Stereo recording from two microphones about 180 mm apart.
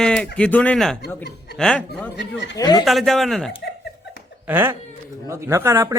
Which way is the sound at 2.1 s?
75° left (ahead or behind).